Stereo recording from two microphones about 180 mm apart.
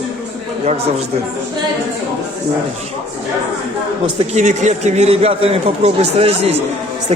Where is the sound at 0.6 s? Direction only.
35° right (ahead or behind).